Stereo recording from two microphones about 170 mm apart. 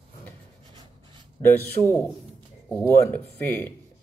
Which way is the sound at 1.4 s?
15° left (ahead or behind).